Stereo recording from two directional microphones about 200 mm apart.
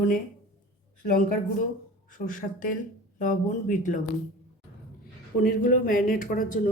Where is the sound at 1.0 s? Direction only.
40° left (ahead or behind).